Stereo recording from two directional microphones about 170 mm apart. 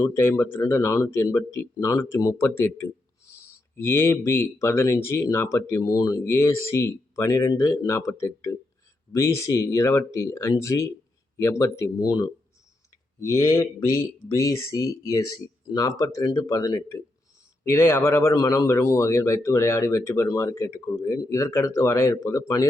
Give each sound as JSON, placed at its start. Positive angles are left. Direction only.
{"t": 0.0, "sound": "speech", "side_deg": 15}